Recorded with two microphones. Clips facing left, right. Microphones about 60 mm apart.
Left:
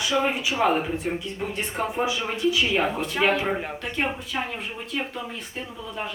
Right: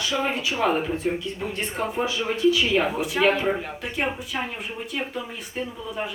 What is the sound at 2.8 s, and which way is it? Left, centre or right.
Speech, centre.